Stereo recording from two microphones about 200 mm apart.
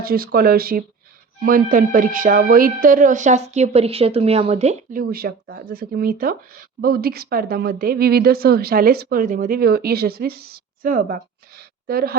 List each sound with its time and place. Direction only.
0.0 s speech: 50° right (ahead or behind)